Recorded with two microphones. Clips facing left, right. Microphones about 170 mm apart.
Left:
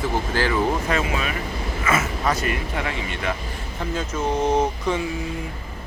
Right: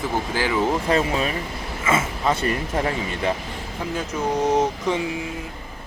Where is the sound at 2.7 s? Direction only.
40° right (ahead or behind).